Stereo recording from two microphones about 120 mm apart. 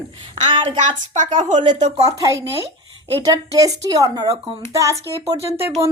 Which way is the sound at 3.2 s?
30° right (ahead or behind).